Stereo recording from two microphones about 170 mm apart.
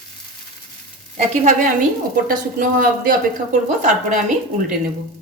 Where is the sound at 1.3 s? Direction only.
45° right (ahead or behind).